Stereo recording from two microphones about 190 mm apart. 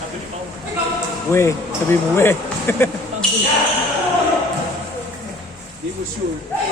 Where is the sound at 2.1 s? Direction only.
10° left (ahead or behind).